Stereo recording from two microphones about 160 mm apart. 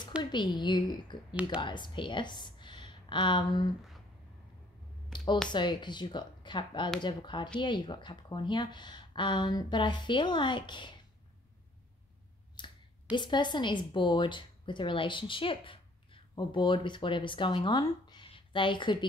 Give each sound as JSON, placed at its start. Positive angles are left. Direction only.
{"t": 0.2, "sound": "a woman's voice", "side_deg": 30}
{"t": 5.1, "sound": "a sound", "side_deg": 30}
{"t": 5.5, "sound": "speech", "side_deg": 30}
{"t": 12.6, "sound": "finger snapping", "side_deg": 30}
{"t": 13.1, "sound": "speech", "side_deg": 30}